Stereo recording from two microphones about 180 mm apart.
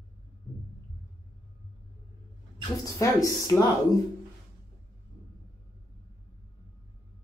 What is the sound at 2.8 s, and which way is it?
Speech, 15° left (ahead or behind).